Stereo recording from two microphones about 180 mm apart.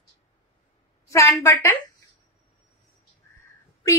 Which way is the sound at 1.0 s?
20° left (ahead or behind).